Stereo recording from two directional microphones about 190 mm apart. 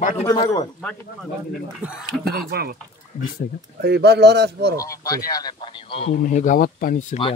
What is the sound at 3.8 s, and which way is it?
Speech, 60° right (ahead or behind).